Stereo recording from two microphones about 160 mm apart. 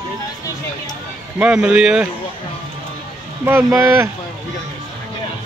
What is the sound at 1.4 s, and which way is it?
Speech, 5° right (ahead or behind).